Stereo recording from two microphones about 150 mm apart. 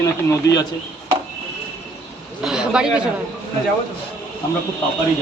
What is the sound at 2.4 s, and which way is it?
Speech, 5° right (ahead or behind).